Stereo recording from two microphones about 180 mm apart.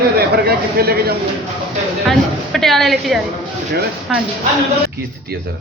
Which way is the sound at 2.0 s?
Centre (ahead or behind).